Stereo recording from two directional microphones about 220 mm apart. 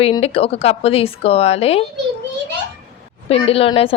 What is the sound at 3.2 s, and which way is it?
Speech, 25° left (ahead or behind).